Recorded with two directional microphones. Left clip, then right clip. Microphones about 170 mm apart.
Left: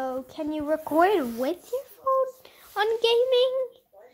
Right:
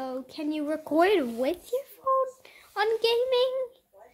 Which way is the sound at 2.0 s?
5° left (ahead or behind).